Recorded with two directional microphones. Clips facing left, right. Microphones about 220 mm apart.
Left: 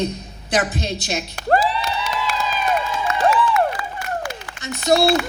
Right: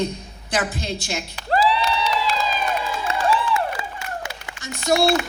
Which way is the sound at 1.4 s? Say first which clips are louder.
Left 1 dB; 50° left (ahead or behind).